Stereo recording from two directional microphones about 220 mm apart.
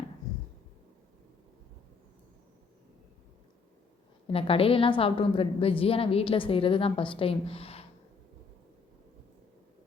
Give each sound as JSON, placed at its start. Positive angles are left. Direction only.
{"t": 4.3, "sound": "a woman's voice", "side_deg": 25}